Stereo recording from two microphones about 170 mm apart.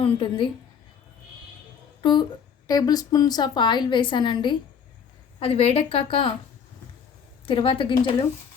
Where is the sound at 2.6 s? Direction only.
20° left (ahead or behind).